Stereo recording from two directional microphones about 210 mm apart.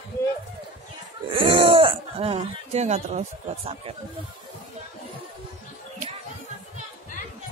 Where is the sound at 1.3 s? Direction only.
25° right (ahead or behind).